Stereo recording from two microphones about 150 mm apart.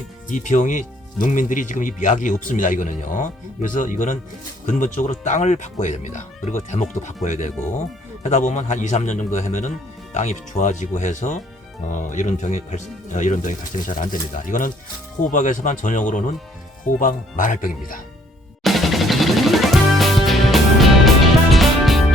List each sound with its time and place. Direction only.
0.3 s speech: 55° left (ahead or behind)
18.6 s music: centre (ahead or behind)